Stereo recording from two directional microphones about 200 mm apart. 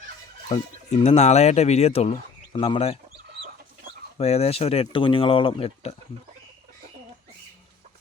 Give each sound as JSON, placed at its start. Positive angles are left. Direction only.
{"t": 0.4, "sound": "speech", "side_deg": 30}
{"t": 4.2, "sound": "speech", "side_deg": 30}